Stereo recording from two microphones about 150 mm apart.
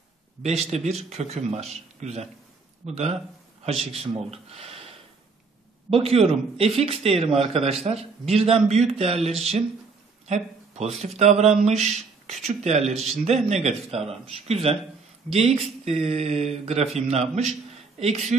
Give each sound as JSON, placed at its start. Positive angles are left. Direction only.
{"t": 0.4, "sound": "a man's voice", "side_deg": -45}